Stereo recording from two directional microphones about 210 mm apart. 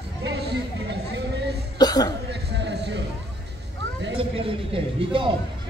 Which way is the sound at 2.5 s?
55° right (ahead or behind).